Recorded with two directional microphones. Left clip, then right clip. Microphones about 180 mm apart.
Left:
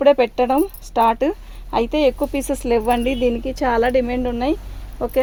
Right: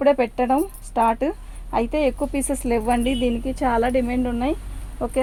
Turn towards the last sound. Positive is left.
turn(degrees=60)  # may be behind; listen again after turning